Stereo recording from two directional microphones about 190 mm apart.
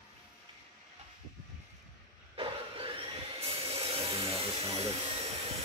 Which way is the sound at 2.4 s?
30° right (ahead or behind).